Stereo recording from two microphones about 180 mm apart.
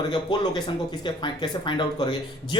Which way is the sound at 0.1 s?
25° left (ahead or behind).